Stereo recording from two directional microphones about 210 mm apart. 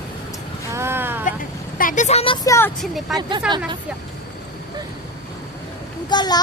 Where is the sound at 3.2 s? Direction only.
20° right (ahead or behind).